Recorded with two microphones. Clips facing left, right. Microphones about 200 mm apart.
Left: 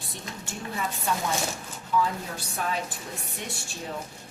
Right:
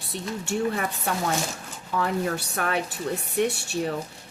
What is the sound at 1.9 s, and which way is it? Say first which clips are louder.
Speech: right 2 dB; 70° right (ahead or behind).